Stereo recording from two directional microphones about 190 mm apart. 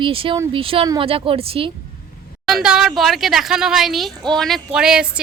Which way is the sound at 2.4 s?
Centre (ahead or behind).